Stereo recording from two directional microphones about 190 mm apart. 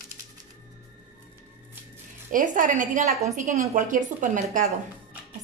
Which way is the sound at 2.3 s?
45° right (ahead or behind).